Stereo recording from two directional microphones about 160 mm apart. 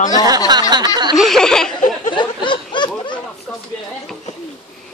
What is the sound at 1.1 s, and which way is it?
Laughter, centre (ahead or behind).